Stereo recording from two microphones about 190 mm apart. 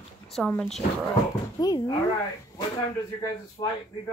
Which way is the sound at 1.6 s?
20° left (ahead or behind).